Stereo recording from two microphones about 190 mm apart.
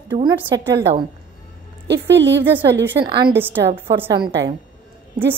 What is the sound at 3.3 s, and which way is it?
Speech, 10° right (ahead or behind).